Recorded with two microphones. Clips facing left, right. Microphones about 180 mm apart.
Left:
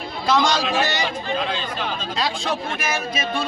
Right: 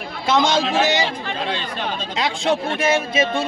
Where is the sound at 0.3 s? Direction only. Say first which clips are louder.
Right 2 dB; 25° right (ahead or behind).